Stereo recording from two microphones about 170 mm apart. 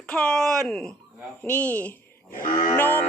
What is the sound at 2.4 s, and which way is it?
Cattle, 50° left (ahead or behind).